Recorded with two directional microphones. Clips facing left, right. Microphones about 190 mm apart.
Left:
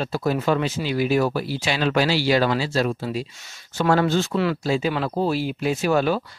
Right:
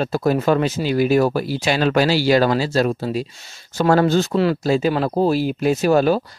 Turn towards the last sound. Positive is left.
turn(degrees=-40)  # may be behind; listen again after turning